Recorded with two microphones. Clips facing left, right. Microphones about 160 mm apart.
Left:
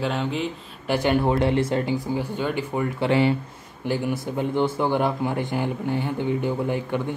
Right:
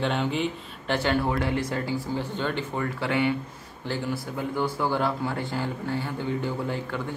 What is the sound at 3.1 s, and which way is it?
Speech, 30° left (ahead or behind).